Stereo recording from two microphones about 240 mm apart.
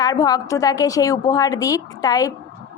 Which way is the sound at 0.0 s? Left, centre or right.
Centre.